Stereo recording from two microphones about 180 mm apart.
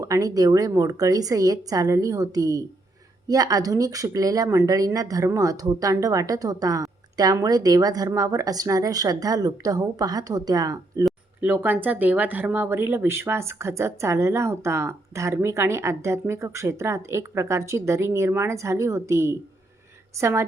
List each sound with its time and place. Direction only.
0.0 s speech: 20° right (ahead or behind)
11.0 s speech: 10° right (ahead or behind)